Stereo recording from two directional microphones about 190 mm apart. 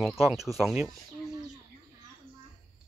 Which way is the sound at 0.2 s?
Centre (ahead or behind).